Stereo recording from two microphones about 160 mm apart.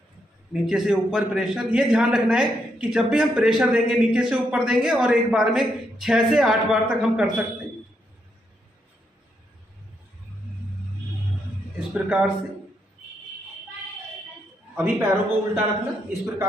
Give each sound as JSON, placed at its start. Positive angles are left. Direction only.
{"t": 0.5, "sound": "a man's voice", "side_deg": -5}
{"t": 11.9, "sound": "a man's voice", "side_deg": -5}
{"t": 14.8, "sound": "speech", "side_deg": -15}